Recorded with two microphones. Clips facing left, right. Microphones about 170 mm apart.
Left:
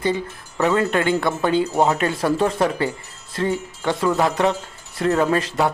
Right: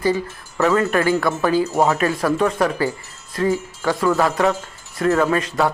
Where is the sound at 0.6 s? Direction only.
20° left (ahead or behind).